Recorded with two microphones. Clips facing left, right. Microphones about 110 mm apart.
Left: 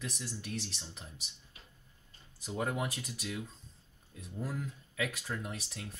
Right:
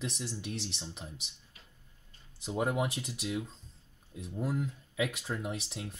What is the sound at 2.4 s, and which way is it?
Speech, 20° right (ahead or behind).